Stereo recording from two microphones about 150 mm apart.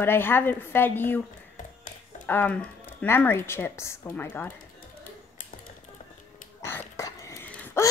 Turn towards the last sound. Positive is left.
turn(degrees=15)  # may be behind; listen again after turning